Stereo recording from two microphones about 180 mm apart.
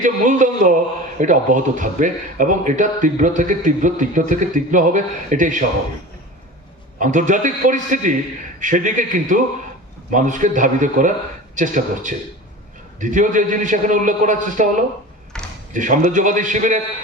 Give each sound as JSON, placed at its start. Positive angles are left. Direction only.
{"t": 0.0, "sound": "a man's voice", "side_deg": -45}
{"t": 7.0, "sound": "a man's voice", "side_deg": -45}
{"t": 15.3, "sound": "a sound", "side_deg": 5}
{"t": 15.7, "sound": "a man's voice", "side_deg": -45}